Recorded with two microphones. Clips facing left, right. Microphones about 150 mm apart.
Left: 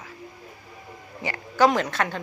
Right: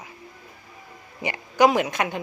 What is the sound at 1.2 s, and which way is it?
Speech, 15° right (ahead or behind).